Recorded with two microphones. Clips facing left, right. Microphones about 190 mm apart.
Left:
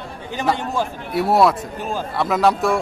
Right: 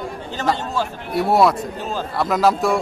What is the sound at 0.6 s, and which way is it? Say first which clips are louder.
Speech: left 1 dB; 15° left (ahead or behind).